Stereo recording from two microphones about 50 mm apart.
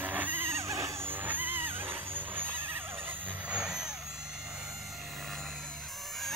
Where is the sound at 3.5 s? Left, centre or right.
Centre.